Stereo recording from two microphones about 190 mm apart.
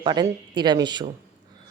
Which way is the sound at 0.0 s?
20° right (ahead or behind).